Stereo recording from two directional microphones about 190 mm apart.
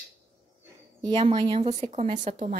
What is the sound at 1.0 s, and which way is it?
A woman's voice, 25° right (ahead or behind).